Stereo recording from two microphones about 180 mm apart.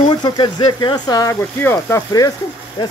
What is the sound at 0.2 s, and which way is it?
Speech, 25° left (ahead or behind).